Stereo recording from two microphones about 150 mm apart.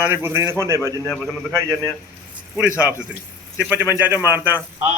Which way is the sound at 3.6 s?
10° right (ahead or behind).